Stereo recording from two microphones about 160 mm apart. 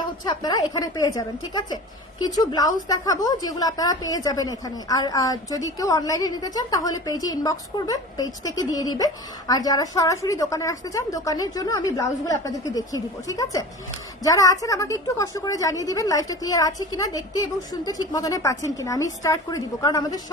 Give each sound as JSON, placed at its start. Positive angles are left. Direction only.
{"t": 0.2, "sound": "a woman's voice", "side_deg": 25}